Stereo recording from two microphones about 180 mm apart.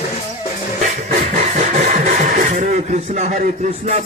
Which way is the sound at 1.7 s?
45° right (ahead or behind).